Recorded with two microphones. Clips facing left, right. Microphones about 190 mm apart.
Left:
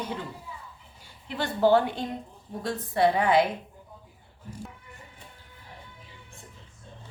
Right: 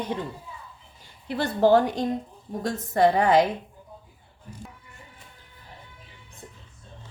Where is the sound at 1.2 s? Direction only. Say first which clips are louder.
Right 3 dB; 40° right (ahead or behind).